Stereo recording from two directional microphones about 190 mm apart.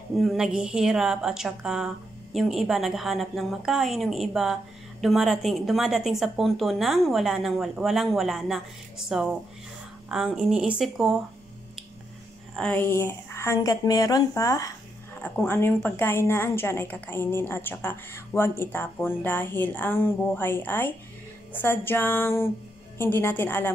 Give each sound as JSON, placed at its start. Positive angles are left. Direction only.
{"t": 0.2, "sound": "speech", "side_deg": 0}
{"t": 12.5, "sound": "a woman's voice", "side_deg": 5}